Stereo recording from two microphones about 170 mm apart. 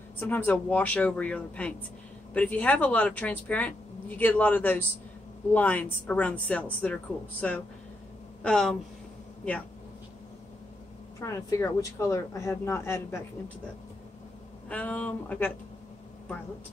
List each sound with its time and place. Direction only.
0.2 s speech: 10° left (ahead or behind)
11.1 s speech: 15° left (ahead or behind)
14.7 s speech: 10° left (ahead or behind)